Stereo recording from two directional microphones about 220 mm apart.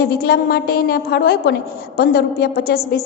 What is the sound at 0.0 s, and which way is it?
A woman's voice, 45° left (ahead or behind).